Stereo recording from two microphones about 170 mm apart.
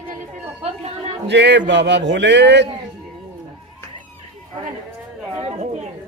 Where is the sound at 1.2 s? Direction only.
90° right.